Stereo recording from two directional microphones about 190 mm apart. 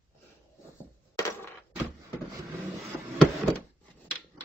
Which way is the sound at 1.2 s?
15° left (ahead or behind).